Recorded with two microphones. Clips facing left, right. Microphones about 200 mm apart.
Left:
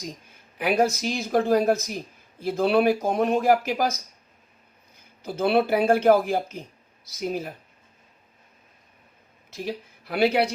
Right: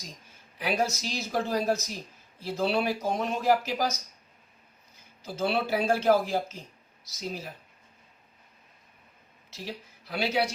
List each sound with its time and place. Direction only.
0.6 s speech: 55° left (ahead or behind)
5.2 s speech: 60° left (ahead or behind)
9.5 s speech: 55° left (ahead or behind)